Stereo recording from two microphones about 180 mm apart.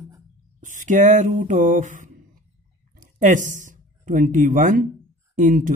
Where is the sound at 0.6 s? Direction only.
45° right (ahead or behind).